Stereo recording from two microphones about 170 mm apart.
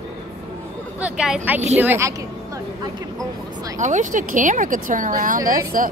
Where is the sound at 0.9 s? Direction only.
5° right (ahead or behind).